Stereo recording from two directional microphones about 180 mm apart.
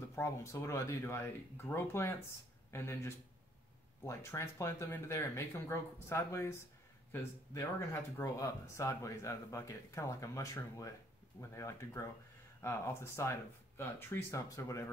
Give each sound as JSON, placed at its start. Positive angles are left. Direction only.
{"t": 0.1, "sound": "speech", "side_deg": 15}